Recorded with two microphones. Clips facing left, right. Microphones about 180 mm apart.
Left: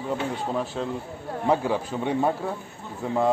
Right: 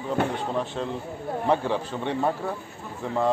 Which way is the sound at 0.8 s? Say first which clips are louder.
Even; 5° left (ahead or behind).